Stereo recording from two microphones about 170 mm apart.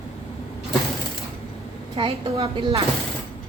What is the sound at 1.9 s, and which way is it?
Speech, 30° right (ahead or behind).